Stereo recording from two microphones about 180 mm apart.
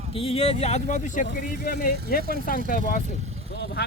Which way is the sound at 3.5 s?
65° left (ahead or behind).